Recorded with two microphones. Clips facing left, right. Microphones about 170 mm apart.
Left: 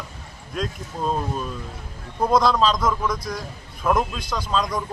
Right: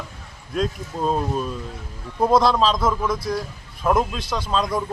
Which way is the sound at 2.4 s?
5° right (ahead or behind).